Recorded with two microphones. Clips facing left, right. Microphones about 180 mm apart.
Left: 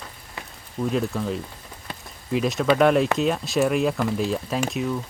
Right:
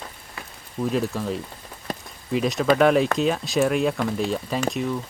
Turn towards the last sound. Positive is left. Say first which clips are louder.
# even
turn(degrees=0)  # may be behind; listen again after turning